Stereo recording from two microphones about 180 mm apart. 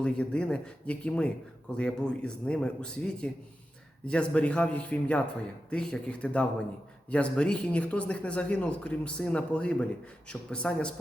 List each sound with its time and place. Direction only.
0.0 s speech: 5° left (ahead or behind)